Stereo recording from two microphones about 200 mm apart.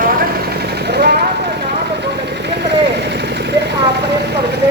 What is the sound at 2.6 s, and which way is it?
Vehicle, 55° right (ahead or behind).